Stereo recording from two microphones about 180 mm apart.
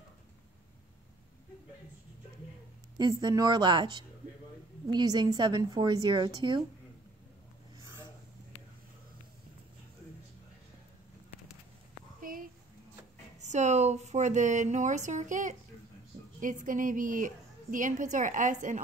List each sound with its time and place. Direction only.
3.0 s a woman's voice: 20° right (ahead or behind)
12.2 s a sound: 50° right (ahead or behind)
13.4 s speech: 40° right (ahead or behind)
16.6 s a woman's voice: 50° right (ahead or behind)